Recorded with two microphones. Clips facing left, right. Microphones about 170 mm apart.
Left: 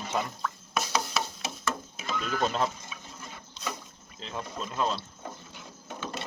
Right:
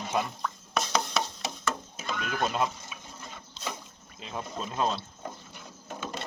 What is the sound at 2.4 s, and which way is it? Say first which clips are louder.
Speech: even; 10° right (ahead or behind).